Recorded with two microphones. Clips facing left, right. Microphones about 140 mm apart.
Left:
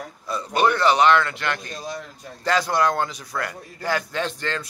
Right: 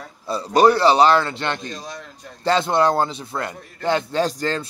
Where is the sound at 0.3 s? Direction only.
35° right (ahead or behind).